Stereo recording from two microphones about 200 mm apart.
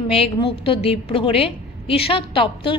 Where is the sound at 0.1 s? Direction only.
30° left (ahead or behind).